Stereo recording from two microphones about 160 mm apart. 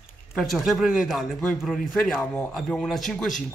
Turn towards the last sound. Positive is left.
turn(degrees=0)  # may be behind; listen again after turning